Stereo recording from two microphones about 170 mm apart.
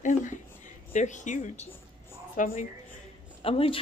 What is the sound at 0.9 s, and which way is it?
A woman's voice, 45° left (ahead or behind).